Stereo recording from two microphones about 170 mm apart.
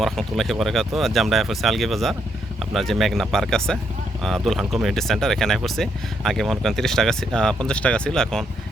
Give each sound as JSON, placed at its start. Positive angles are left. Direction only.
{"t": 0.0, "sound": "speech", "side_deg": 0}